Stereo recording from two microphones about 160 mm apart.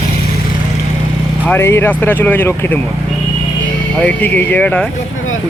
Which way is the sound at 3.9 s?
5° left (ahead or behind).